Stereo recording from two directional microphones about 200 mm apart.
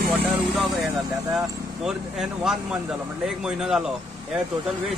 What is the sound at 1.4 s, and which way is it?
A man's voice, centre (ahead or behind).